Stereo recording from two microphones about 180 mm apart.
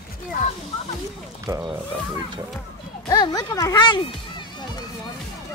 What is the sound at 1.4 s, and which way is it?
Speech, 15° right (ahead or behind).